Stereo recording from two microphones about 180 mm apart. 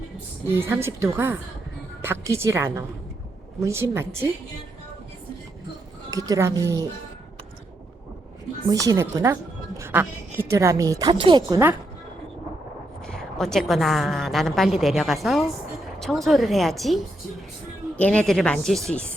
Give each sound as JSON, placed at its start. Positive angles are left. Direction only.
{"t": 0.5, "sound": "a woman's voice", "side_deg": -15}
{"t": 6.1, "sound": "speech", "side_deg": -20}
{"t": 8.7, "sound": "a woman's voice", "side_deg": -20}
{"t": 13.1, "sound": "a woman's voice", "side_deg": 5}